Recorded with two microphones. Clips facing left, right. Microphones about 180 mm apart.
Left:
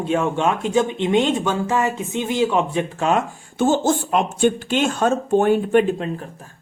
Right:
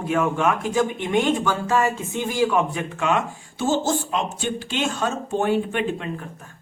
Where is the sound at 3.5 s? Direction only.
50° left (ahead or behind).